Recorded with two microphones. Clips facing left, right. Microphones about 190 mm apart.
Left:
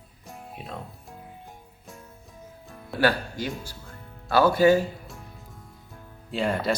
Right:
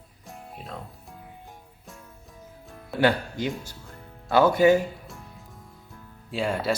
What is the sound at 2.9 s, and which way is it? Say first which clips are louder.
Speech: right 1 dB; 20° right (ahead or behind).